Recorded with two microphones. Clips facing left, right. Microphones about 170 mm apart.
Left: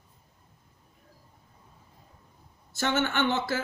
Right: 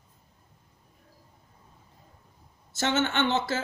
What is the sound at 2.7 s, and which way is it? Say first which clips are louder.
Speech: right 1 dB; 20° right (ahead or behind).